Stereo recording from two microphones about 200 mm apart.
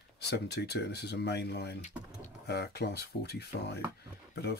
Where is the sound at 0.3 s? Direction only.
55° left (ahead or behind).